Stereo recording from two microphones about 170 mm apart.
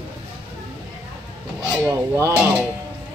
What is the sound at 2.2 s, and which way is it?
Speech, 15° right (ahead or behind).